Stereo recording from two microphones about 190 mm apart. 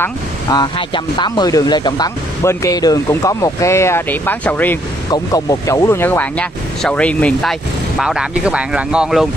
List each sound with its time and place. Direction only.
0.0 s speech: 20° left (ahead or behind); by 9.3 s 5° right (ahead or behind)